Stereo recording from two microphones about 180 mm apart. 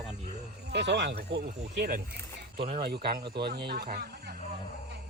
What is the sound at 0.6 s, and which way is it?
Speech, 70° right (ahead or behind).